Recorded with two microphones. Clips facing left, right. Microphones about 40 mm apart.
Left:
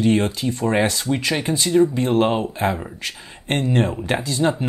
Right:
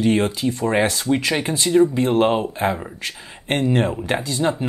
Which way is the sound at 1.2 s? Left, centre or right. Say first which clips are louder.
Even; centre.